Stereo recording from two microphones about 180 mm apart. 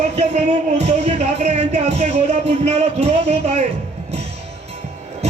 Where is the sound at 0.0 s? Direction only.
40° right (ahead or behind).